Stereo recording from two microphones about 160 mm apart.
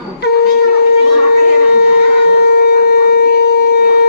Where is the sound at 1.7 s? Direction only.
90° left.